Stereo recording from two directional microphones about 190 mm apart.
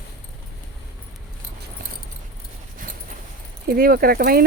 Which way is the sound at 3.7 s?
50° right (ahead or behind).